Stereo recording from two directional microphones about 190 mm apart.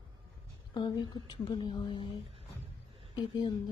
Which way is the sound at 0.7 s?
20° left (ahead or behind).